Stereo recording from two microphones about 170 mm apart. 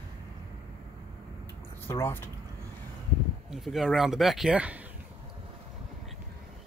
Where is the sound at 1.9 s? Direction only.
15° left (ahead or behind).